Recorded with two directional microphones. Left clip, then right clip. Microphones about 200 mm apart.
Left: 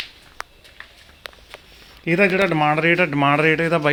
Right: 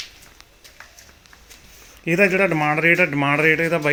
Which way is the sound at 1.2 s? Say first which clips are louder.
Left 11 dB; 30° left (ahead or behind).